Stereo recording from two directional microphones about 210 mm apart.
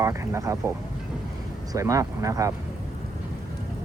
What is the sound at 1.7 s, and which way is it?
Speech, 15° right (ahead or behind).